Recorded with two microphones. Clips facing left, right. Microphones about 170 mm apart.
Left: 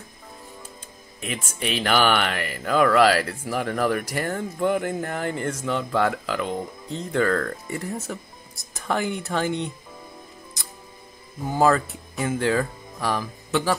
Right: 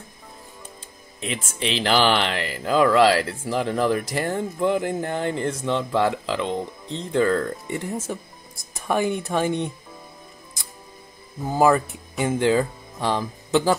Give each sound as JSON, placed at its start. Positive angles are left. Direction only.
{"t": 1.2, "sound": "mantra", "side_deg": -30}
{"t": 11.5, "sound": "speech", "side_deg": -15}